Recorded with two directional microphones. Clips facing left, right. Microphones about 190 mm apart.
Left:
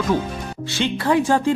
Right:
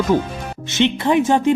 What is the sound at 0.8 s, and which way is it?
Speech, 20° right (ahead or behind).